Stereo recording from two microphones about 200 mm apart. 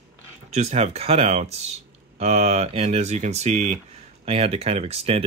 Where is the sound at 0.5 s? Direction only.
35° right (ahead or behind).